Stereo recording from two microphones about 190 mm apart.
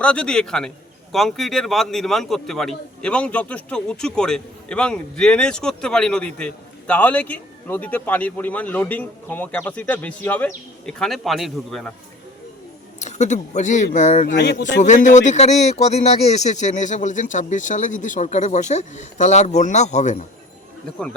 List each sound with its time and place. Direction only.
0.0 s a man's voice: 5° left (ahead or behind)
13.0 s speech: 40° left (ahead or behind)
14.3 s speech: 65° left (ahead or behind)
14.8 s speech: 40° left (ahead or behind)